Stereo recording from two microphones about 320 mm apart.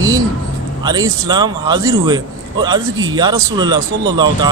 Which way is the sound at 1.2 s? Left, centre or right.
Centre.